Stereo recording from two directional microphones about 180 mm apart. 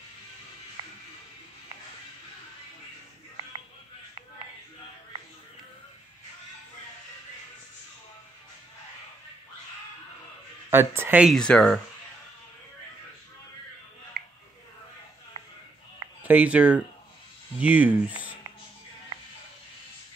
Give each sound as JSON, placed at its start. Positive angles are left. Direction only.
{"t": 0.8, "sound": "music", "side_deg": -20}
{"t": 10.7, "sound": "speech", "side_deg": -15}
{"t": 11.3, "sound": "speech", "side_deg": 5}
{"t": 14.2, "sound": "a sound", "side_deg": -55}
{"t": 15.3, "sound": "a sound", "side_deg": -30}
{"t": 16.2, "sound": "speech", "side_deg": -10}